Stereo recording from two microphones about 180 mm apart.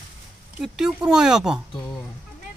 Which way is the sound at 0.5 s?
5° right (ahead or behind).